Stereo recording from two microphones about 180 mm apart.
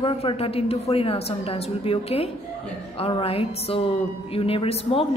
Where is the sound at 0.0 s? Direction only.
30° left (ahead or behind).